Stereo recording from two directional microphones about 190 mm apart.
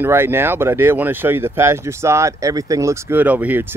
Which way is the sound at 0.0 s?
10° right (ahead or behind).